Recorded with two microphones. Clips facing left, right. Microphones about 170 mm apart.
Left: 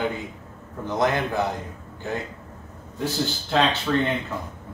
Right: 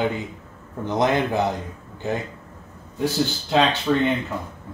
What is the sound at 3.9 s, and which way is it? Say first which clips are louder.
Speech: right 3 dB; 15° right (ahead or behind).